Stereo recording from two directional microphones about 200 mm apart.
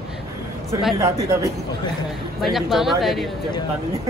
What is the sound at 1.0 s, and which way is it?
Speech, 15° right (ahead or behind).